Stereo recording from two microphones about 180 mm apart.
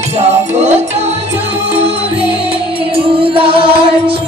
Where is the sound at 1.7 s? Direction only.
35° right (ahead or behind).